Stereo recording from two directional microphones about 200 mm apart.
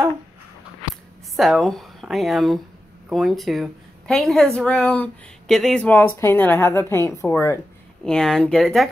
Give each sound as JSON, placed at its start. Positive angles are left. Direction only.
{"t": 1.3, "sound": "a woman's voice", "side_deg": 0}